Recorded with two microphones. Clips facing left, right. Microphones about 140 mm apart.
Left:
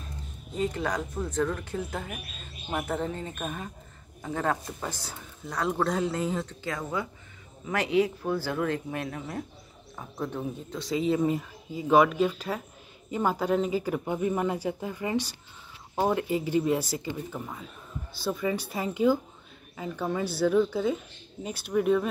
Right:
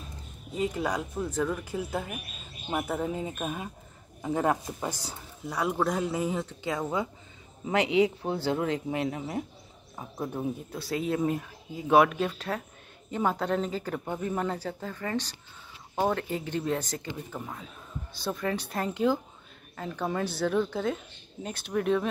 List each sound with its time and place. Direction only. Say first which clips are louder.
0.6 s a man's voice: even; 5° right (ahead or behind)